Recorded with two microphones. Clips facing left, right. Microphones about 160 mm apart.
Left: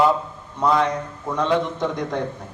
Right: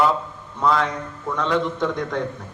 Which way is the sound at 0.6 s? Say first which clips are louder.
Left 1 dB; 20° left (ahead or behind).